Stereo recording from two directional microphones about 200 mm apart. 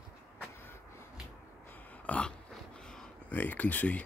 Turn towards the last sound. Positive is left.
turn(degrees=5)  # may be behind; listen again after turning